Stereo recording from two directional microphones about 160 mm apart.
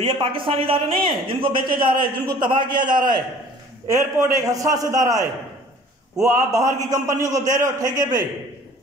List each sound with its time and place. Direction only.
0.0 s a man's voice: 30° right (ahead or behind)
4.2 s a man's voice: 20° right (ahead or behind)